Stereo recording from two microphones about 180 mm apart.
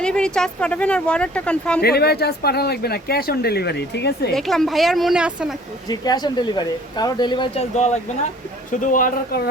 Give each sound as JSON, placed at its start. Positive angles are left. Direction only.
{"t": 0.0, "sound": "speech", "side_deg": 5}
{"t": 1.8, "sound": "speech", "side_deg": 60}
{"t": 4.4, "sound": "speech", "side_deg": 0}
{"t": 5.9, "sound": "speech", "side_deg": 20}
{"t": 8.7, "sound": "a man's voice", "side_deg": 45}